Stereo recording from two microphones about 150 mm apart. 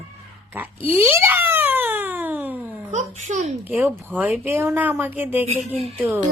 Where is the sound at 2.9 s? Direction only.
50° right (ahead or behind).